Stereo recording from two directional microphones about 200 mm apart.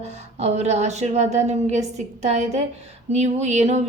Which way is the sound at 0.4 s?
35° right (ahead or behind).